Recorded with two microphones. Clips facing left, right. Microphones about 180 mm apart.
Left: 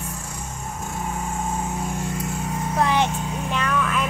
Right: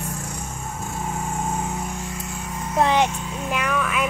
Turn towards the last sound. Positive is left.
turn(degrees=-10)  # may be behind; listen again after turning